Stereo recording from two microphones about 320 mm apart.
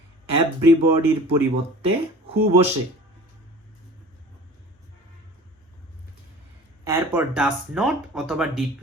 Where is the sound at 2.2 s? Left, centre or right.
Centre.